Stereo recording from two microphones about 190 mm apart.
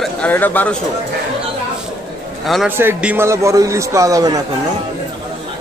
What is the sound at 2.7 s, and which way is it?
Speech, 10° right (ahead or behind).